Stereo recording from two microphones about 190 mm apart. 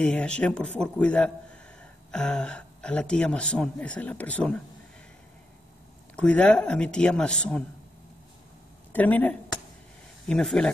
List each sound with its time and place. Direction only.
0.0 s a man's voice: 5° left (ahead or behind)
6.1 s a man's voice: 5° left (ahead or behind)
8.9 s a man's voice: 10° left (ahead or behind)